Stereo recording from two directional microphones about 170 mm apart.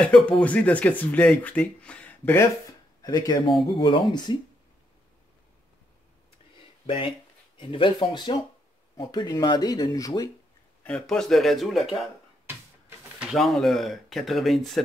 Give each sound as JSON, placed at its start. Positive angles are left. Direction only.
{"t": 0.0, "sound": "speech", "side_deg": 5}
{"t": 3.0, "sound": "speech", "side_deg": 20}
{"t": 6.5, "sound": "a sound", "side_deg": 30}
{"t": 8.9, "sound": "speech", "side_deg": 25}
{"t": 10.8, "sound": "speech", "side_deg": 5}
{"t": 13.2, "sound": "speech", "side_deg": 0}